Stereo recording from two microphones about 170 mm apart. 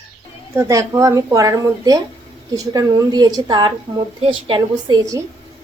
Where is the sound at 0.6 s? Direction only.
20° right (ahead or behind).